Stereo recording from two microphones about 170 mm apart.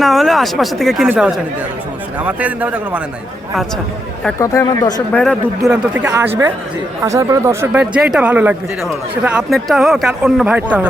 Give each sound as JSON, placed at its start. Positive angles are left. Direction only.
{"t": 0.0, "sound": "speech", "side_deg": 0}
{"t": 1.0, "sound": "speech", "side_deg": -10}
{"t": 4.4, "sound": "speech", "side_deg": 20}
{"t": 5.1, "sound": "speech", "side_deg": 5}
{"t": 5.7, "sound": "speech", "side_deg": -10}